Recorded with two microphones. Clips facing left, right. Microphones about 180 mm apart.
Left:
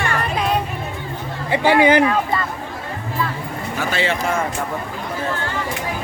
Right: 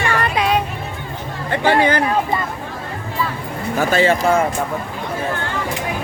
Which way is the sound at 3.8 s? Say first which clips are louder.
Right 6 dB; 45° right (ahead or behind).